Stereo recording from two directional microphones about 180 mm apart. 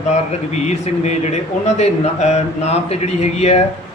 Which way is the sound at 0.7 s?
40° left (ahead or behind).